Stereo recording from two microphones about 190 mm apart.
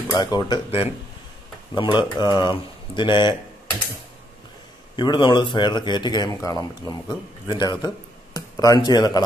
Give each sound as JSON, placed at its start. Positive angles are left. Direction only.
{"t": 0.1, "sound": "a man's voice", "side_deg": 20}
{"t": 4.9, "sound": "a man's voice", "side_deg": 25}